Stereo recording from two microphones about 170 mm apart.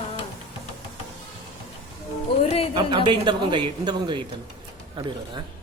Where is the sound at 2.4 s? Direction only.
35° left (ahead or behind).